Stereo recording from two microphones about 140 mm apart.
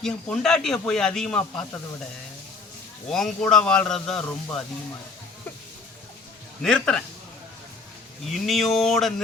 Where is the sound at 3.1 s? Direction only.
5° left (ahead or behind).